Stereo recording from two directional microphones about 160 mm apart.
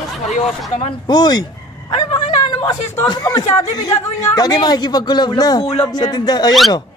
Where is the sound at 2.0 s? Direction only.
25° left (ahead or behind).